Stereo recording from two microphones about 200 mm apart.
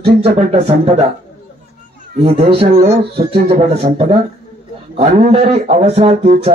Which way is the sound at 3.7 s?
30° right (ahead or behind).